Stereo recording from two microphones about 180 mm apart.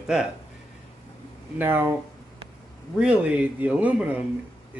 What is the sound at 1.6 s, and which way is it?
Speech, 10° right (ahead or behind).